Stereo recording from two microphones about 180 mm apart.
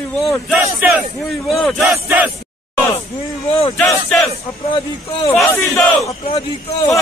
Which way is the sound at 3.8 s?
Centre (ahead or behind).